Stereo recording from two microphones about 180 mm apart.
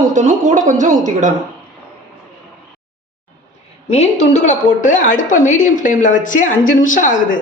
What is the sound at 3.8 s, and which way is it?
A woman's voice, 35° left (ahead or behind).